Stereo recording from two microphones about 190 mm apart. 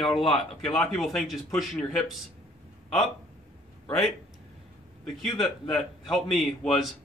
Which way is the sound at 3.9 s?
Centre (ahead or behind).